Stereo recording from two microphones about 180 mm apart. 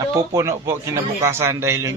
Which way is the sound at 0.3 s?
15° right (ahead or behind).